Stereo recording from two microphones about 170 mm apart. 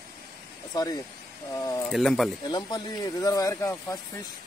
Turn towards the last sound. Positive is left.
turn(degrees=20)  # may be behind; listen again after turning